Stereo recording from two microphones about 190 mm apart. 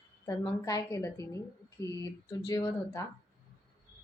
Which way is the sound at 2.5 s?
20° left (ahead or behind).